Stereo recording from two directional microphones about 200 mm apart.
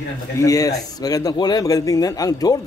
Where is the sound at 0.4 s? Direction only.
15° left (ahead or behind).